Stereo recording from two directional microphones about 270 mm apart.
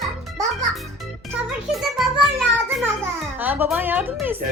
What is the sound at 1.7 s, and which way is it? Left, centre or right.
A child's voice, centre.